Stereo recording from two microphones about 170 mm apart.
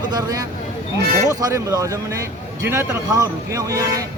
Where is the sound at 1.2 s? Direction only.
20° right (ahead or behind).